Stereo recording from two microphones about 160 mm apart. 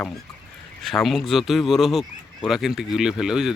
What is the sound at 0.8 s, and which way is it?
Speech, centre (ahead or behind).